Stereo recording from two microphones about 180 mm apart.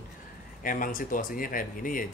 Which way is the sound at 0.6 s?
50° left (ahead or behind).